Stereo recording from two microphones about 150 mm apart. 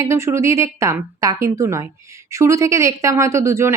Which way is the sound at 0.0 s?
20° right (ahead or behind).